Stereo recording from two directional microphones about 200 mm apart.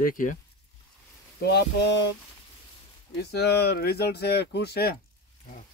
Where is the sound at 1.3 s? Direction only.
55° left (ahead or behind).